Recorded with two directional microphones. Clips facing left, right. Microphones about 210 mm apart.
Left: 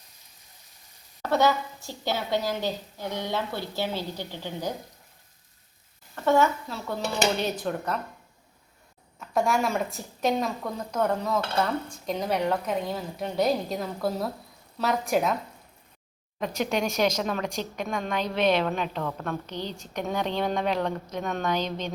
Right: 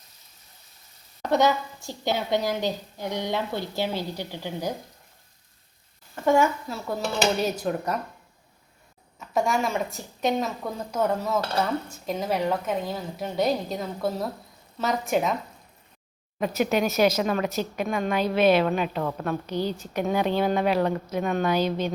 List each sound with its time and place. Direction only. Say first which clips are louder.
1.2 s a woman's voice: right 1 dB; 15° right (ahead or behind)
6.2 s a woman's voice: right 1 dB; 10° right (ahead or behind)
9.1 s speech: even; centre (ahead or behind)
16.4 s a woman's voice: right 4 dB; 5° right (ahead or behind)